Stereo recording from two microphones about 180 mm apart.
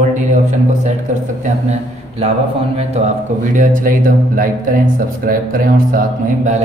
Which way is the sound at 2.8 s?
40° right (ahead or behind).